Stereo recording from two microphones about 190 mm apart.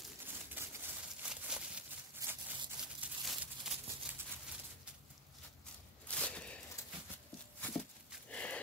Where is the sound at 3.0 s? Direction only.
5° right (ahead or behind).